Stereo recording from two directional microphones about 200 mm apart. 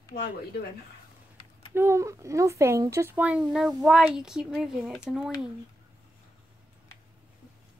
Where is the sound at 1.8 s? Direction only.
15° right (ahead or behind).